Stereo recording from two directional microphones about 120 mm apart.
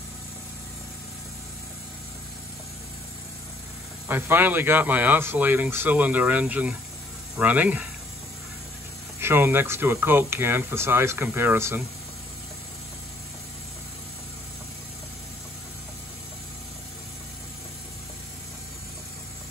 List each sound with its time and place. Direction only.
4.1 s speech: 15° right (ahead or behind)
9.2 s speech: 20° right (ahead or behind)